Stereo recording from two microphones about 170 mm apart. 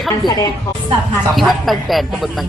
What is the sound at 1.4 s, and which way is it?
A man's voice, centre (ahead or behind).